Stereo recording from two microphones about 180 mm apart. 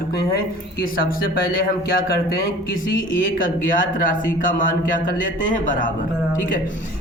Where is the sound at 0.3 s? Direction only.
55° left (ahead or behind).